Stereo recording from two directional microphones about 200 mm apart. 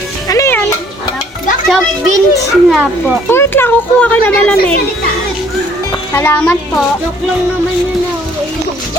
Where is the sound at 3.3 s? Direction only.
10° left (ahead or behind).